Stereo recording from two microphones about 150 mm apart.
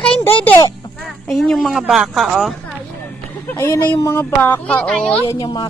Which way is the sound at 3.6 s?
20° left (ahead or behind).